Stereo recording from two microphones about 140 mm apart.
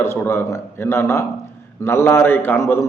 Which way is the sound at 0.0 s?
20° left (ahead or behind).